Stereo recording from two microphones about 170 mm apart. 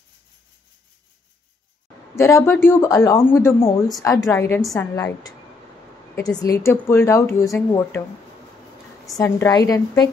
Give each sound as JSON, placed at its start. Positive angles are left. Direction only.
{"t": 2.1, "sound": "a woman's voice", "side_deg": 15}
{"t": 9.1, "sound": "a woman's voice", "side_deg": 20}